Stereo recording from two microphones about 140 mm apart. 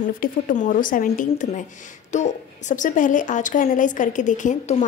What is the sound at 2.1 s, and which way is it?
Speech, 55° left (ahead or behind).